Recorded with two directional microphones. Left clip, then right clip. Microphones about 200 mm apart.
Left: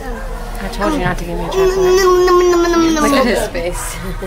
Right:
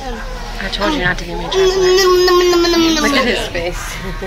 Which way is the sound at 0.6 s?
5° left (ahead or behind).